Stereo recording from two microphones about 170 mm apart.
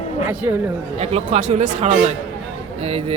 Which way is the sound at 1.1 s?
40° right (ahead or behind).